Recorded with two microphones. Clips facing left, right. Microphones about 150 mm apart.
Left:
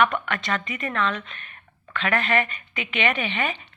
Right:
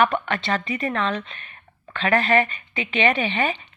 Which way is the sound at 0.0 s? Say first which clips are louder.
Right 2 dB; 30° right (ahead or behind).